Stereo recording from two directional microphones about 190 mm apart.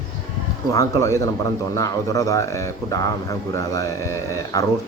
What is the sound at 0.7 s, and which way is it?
Speech, 15° left (ahead or behind).